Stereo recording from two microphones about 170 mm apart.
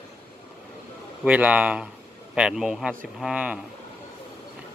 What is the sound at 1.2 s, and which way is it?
Speech, 10° right (ahead or behind).